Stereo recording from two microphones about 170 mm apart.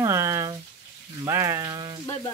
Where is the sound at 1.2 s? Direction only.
15° right (ahead or behind).